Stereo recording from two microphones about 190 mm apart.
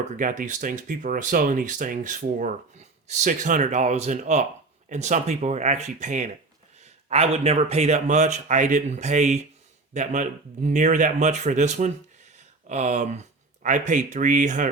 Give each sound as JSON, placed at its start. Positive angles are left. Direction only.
{"t": 0.0, "sound": "speech", "side_deg": -45}